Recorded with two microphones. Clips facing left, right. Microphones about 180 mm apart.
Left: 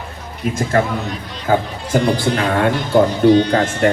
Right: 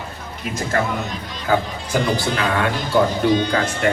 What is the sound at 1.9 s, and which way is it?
Speech, 55° left (ahead or behind).